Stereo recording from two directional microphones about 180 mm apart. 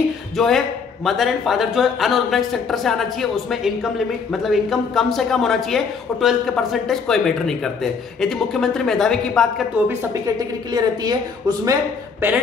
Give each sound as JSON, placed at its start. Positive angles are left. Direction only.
{"t": 0.4, "sound": "speech", "side_deg": 0}
{"t": 9.8, "sound": "a woman's voice", "side_deg": -20}